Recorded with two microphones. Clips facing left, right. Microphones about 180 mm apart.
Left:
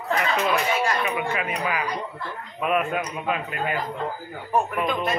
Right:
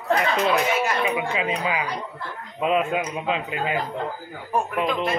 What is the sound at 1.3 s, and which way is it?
A man's voice, 25° right (ahead or behind).